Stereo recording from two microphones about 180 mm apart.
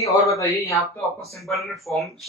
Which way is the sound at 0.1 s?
20° left (ahead or behind).